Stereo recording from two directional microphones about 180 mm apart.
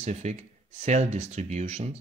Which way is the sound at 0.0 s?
35° right (ahead or behind).